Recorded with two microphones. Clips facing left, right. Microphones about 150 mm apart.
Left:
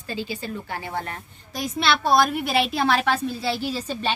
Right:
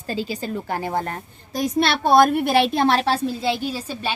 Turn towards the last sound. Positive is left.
turn(degrees=-10)  # may be behind; listen again after turning